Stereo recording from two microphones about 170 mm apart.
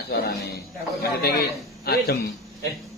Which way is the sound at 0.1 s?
70° left (ahead or behind).